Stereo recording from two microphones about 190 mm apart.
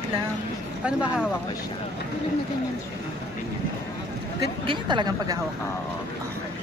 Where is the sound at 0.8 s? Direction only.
5° right (ahead or behind).